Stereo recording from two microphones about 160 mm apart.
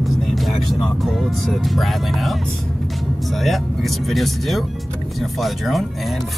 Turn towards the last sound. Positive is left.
turn(degrees=0)  # may be behind; listen again after turning